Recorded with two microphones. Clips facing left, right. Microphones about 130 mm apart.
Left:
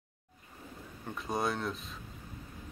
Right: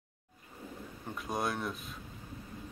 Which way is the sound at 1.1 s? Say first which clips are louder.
Left 2 dB; centre (ahead or behind).